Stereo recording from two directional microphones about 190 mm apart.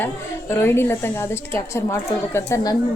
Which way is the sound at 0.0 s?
15° left (ahead or behind).